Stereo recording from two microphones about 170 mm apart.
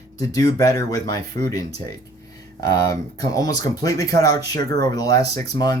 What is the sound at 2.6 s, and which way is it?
Speech, 20° left (ahead or behind).